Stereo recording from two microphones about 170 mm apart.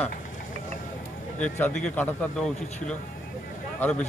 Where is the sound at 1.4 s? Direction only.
5° left (ahead or behind).